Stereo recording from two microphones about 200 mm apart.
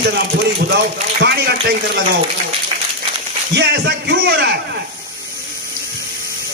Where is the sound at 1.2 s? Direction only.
55° right (ahead or behind).